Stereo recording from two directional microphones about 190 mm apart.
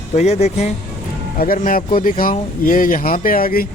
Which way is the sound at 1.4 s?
45° left (ahead or behind).